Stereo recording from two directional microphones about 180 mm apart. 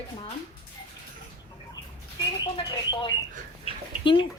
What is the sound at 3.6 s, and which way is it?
Dog, 30° left (ahead or behind).